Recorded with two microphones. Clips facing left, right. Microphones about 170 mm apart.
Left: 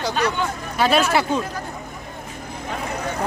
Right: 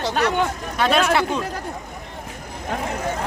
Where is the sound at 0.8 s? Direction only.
5° left (ahead or behind).